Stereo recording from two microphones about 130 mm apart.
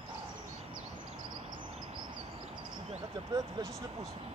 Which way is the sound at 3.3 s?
30° right (ahead or behind).